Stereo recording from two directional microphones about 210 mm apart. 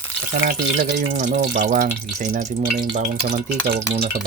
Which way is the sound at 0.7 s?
40° right (ahead or behind).